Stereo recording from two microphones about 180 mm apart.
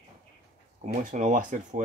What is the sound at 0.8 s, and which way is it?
Speech, 45° right (ahead or behind).